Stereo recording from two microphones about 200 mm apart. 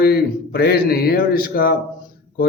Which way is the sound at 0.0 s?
50° left (ahead or behind).